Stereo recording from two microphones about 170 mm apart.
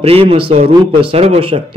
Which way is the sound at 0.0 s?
35° right (ahead or behind).